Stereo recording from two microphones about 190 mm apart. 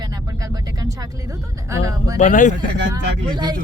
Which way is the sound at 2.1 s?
45° left (ahead or behind).